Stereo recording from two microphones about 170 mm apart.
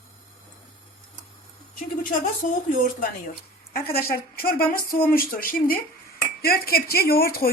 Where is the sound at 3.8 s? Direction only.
65° left (ahead or behind).